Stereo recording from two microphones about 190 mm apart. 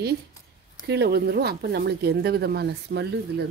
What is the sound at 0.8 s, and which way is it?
Speech, 60° right (ahead or behind).